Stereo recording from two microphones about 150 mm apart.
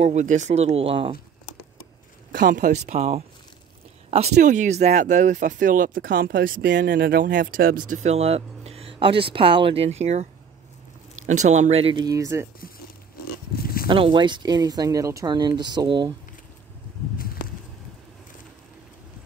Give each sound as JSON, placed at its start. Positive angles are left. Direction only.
{"t": 0.0, "sound": "speech", "side_deg": -50}
{"t": 2.3, "sound": "speech", "side_deg": -65}
{"t": 11.2, "sound": "speech", "side_deg": -50}
{"t": 12.0, "sound": "speech", "side_deg": -20}
{"t": 13.8, "sound": "speech", "side_deg": -35}